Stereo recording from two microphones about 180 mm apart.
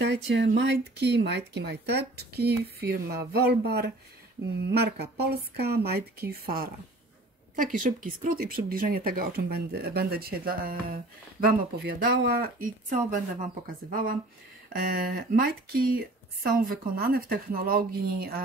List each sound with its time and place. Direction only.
0.0 s speech: 70° right (ahead or behind)
7.5 s speech: 50° right (ahead or behind)